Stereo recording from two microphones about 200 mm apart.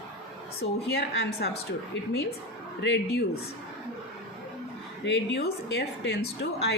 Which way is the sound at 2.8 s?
60° left (ahead or behind).